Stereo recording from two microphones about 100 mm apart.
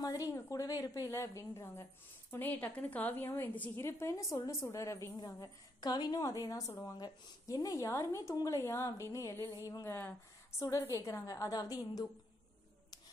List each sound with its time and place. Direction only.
0.0 s a woman's voice: 35° left (ahead or behind)
2.3 s a woman's voice: 15° left (ahead or behind)
5.2 s a woman's voice: 45° left (ahead or behind)